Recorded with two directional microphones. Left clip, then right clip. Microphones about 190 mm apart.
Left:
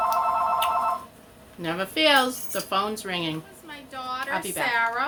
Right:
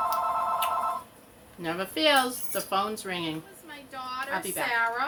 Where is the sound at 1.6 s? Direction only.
20° left (ahead or behind).